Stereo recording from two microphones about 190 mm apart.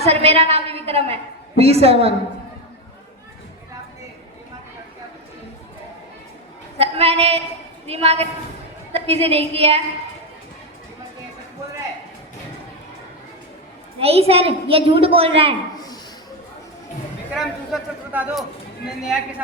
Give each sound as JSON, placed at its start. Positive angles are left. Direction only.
{"t": 0.0, "sound": "a woman's voice", "side_deg": -30}
{"t": 6.7, "sound": "a woman's voice", "side_deg": -30}
{"t": 14.0, "sound": "a woman's voice", "side_deg": -30}
{"t": 15.7, "sound": "a sound", "side_deg": 20}
{"t": 17.3, "sound": "a man's voice", "side_deg": 0}